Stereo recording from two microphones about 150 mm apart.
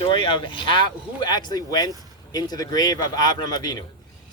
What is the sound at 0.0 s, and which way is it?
A man's voice, 35° left (ahead or behind).